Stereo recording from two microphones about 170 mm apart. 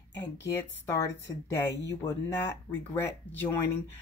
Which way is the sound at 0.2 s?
15° left (ahead or behind).